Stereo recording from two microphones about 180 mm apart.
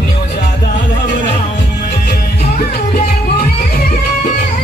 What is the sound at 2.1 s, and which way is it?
Music, 55° left (ahead or behind).